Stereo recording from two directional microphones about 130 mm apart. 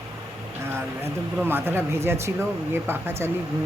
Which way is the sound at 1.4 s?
15° right (ahead or behind).